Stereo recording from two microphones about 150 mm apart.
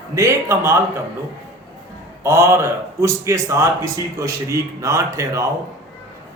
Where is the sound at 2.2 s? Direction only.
15° right (ahead or behind).